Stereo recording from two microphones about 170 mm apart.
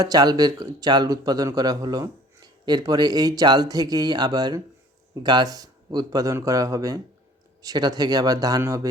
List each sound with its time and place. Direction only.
0.0 s a man's voice: 25° right (ahead or behind)